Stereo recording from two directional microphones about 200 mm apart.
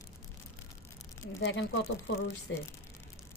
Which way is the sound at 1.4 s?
60° left (ahead or behind).